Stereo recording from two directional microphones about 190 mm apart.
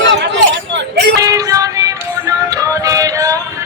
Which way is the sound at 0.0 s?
70° right (ahead or behind).